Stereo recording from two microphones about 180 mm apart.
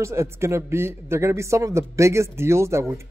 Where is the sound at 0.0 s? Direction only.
15° right (ahead or behind).